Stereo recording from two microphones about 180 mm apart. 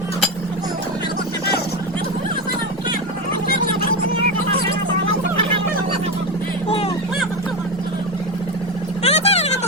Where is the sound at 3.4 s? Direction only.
50° left (ahead or behind).